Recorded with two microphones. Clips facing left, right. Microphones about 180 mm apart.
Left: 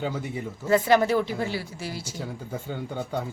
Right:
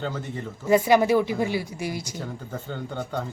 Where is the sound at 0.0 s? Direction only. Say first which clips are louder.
Left 1 dB; 10° left (ahead or behind).